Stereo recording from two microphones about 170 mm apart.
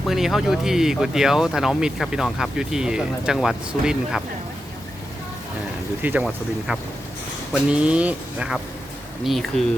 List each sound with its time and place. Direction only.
0.0 s speech: centre (ahead or behind)
6.0 s speech: 10° right (ahead or behind)